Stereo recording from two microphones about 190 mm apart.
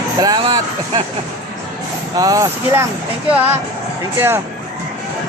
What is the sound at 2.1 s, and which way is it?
Speech, 20° right (ahead or behind).